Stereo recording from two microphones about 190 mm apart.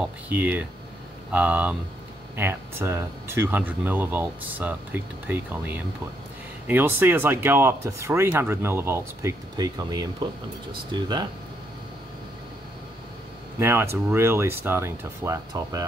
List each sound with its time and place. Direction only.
0.3 s speech: 10° right (ahead or behind)
13.6 s speech: 10° right (ahead or behind)